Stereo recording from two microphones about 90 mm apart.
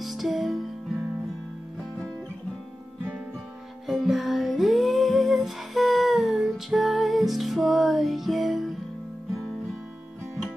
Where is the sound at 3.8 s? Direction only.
5° right (ahead or behind).